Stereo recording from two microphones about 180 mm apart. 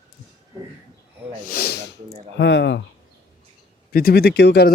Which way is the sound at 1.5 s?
60° left (ahead or behind).